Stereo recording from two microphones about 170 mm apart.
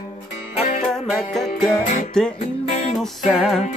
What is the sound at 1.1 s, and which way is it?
Music, centre (ahead or behind).